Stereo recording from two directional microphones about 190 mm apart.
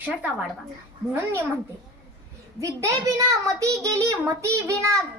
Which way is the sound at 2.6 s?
15° right (ahead or behind).